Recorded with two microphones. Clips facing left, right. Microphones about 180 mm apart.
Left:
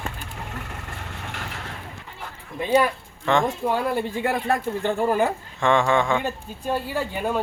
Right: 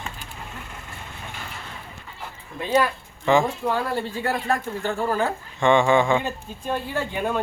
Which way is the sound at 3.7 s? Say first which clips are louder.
Left 2 dB; 15° left (ahead or behind).